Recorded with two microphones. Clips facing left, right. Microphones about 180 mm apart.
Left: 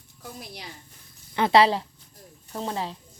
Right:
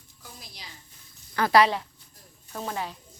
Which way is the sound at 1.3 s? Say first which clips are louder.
Left 2 dB; 25° left (ahead or behind).